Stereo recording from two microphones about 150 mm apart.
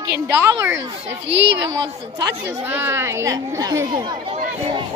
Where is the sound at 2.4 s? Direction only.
15° right (ahead or behind).